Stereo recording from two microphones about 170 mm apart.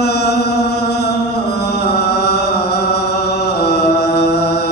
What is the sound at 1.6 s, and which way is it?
Chant, 70° left (ahead or behind).